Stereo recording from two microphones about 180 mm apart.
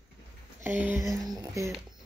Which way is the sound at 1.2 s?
20° right (ahead or behind).